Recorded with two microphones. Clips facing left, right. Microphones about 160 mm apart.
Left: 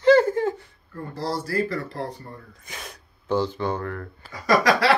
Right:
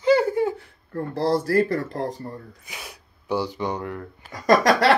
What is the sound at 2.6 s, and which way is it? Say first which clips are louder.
Speech: left 1 dB; 10° right (ahead or behind).